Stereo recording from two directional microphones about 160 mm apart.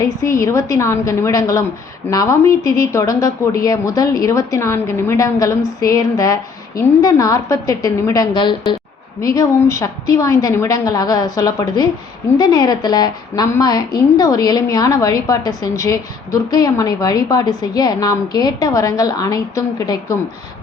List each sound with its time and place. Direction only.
0.0 s speech: 20° left (ahead or behind)